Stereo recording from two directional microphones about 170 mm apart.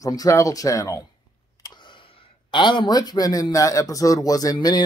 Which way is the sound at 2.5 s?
30° left (ahead or behind).